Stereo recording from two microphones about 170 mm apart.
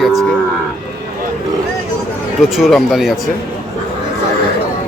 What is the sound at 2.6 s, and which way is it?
Speech, centre (ahead or behind).